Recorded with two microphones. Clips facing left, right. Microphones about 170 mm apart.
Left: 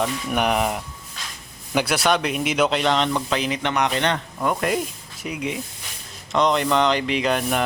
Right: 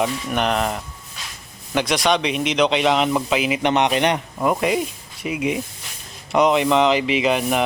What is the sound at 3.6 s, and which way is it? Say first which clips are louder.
Speech: right 6 dB; 20° right (ahead or behind).